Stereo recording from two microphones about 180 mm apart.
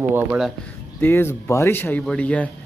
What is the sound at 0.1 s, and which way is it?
Speech, 10° right (ahead or behind).